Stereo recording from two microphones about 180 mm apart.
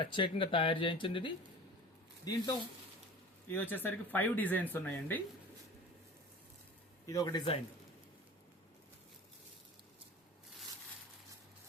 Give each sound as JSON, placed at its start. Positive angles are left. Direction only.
{"t": 0.0, "sound": "speech", "side_deg": 30}
{"t": 3.5, "sound": "speech", "side_deg": 10}
{"t": 7.1, "sound": "speech", "side_deg": 20}